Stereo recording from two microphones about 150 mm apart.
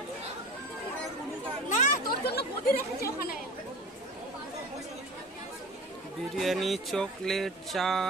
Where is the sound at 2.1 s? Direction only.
90° left.